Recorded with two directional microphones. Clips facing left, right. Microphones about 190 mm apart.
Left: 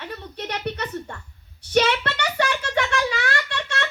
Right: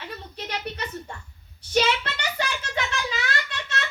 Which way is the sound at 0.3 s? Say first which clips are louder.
Left 4 dB; 60° left (ahead or behind).